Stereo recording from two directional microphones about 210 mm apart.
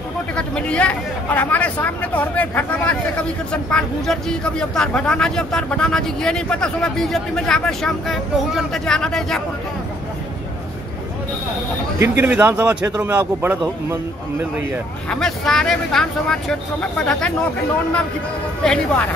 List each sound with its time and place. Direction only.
0.4 s speech: 5° left (ahead or behind)
12.0 s a man's voice: 10° right (ahead or behind)
15.0 s speech: centre (ahead or behind)
18.6 s speech: 5° left (ahead or behind)